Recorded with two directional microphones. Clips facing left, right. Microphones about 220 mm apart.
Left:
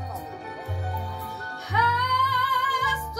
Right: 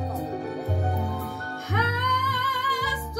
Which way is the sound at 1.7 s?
50° right (ahead or behind).